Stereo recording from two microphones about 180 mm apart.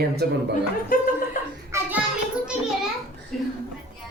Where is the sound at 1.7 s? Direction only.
15° right (ahead or behind).